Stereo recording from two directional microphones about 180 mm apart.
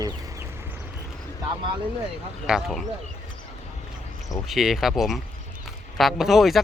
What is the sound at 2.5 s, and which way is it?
Speech, centre (ahead or behind).